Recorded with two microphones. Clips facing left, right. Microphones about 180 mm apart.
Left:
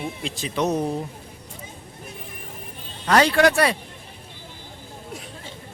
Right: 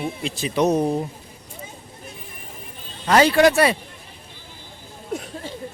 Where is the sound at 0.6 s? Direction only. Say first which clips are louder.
Right 4 dB; 15° right (ahead or behind).